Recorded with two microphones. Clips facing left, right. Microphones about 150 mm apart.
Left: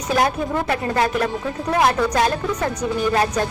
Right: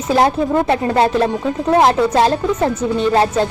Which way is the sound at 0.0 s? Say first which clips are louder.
Right 5 dB; 25° right (ahead or behind).